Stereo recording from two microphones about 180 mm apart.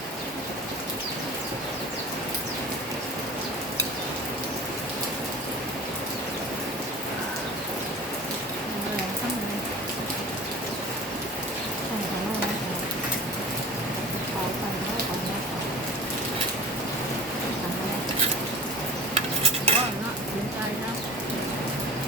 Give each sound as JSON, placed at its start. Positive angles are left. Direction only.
{"t": 19.1, "sound": "stir", "side_deg": -35}